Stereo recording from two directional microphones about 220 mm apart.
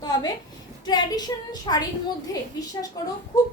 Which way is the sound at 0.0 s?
20° left (ahead or behind).